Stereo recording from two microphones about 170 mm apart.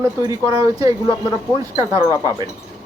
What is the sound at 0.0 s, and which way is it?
Speech, 20° right (ahead or behind).